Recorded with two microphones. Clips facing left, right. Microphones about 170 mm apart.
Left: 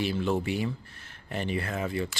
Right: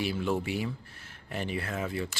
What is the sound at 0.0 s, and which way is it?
Speech, 10° right (ahead or behind).